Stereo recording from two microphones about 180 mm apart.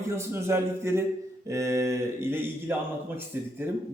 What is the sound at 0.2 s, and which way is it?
A man's voice, 15° right (ahead or behind).